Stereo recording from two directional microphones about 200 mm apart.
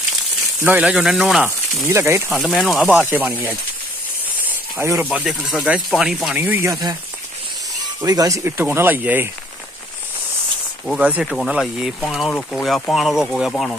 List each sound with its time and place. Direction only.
0.7 s speech: 5° right (ahead or behind)
1.9 s speech: 15° right (ahead or behind)
2.4 s speech: centre (ahead or behind)
4.7 s speech: 15° right (ahead or behind)
8.0 s speech: 20° right (ahead or behind)
10.9 s speech: 5° right (ahead or behind)